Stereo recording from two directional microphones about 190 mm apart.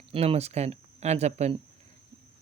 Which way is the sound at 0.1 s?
30° right (ahead or behind).